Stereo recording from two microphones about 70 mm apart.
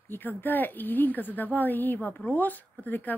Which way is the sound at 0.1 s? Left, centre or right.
Left.